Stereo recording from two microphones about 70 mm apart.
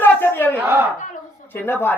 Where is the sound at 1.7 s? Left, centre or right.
Left.